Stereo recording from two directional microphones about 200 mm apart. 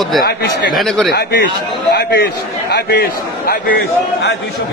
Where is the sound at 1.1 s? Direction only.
55° left (ahead or behind).